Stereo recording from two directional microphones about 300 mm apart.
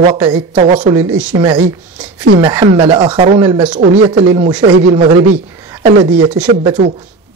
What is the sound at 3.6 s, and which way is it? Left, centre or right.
Speech, centre.